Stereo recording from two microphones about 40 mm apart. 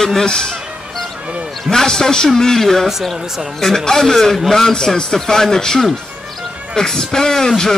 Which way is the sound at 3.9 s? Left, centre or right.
Centre.